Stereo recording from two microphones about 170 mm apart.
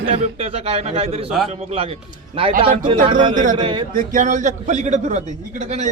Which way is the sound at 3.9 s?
50° right (ahead or behind).